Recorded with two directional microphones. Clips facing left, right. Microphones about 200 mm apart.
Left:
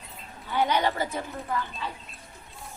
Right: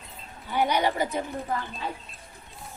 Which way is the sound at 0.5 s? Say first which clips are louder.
Right 1 dB; 15° right (ahead or behind).